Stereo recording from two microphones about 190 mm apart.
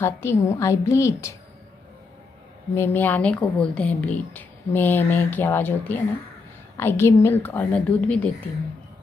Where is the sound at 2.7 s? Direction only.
10° left (ahead or behind).